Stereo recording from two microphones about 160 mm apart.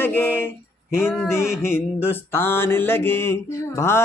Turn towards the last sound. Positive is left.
turn(degrees=15)  # may be behind; listen again after turning